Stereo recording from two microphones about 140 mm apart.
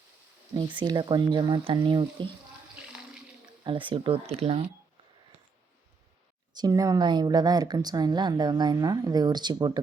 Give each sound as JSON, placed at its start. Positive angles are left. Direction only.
{"t": 0.5, "sound": "speech", "side_deg": -35}
{"t": 3.6, "sound": "speech", "side_deg": -35}
{"t": 6.6, "sound": "a woman's voice", "side_deg": -25}